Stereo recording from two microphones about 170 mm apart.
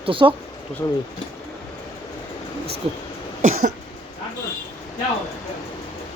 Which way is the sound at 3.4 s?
45° right (ahead or behind).